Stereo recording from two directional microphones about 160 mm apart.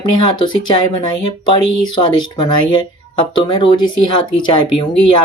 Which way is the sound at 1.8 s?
30° left (ahead or behind).